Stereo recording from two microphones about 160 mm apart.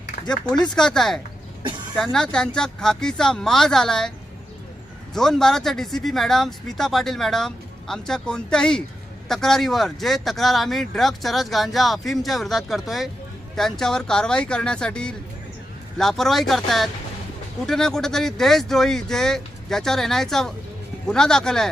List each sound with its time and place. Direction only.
0.4 s speech: 25° left (ahead or behind)
0.7 s speech: 5° left (ahead or behind)
5.1 s speech: centre (ahead or behind)